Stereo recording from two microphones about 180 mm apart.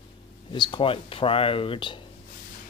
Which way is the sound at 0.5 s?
25° left (ahead or behind).